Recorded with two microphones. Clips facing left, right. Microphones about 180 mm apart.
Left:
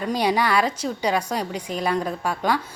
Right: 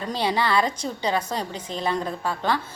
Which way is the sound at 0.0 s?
15° left (ahead or behind).